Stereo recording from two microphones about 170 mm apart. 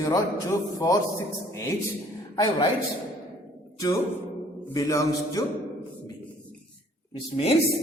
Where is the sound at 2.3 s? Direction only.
20° left (ahead or behind).